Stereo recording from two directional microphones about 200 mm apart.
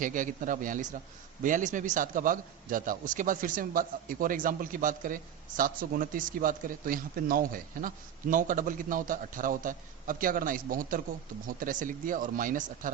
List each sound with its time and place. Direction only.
0.0 s a man's voice: 40° right (ahead or behind)